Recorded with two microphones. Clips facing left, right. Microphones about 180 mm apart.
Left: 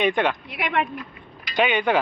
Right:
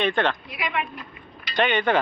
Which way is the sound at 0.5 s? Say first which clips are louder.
Left 4 dB; 60° left (ahead or behind).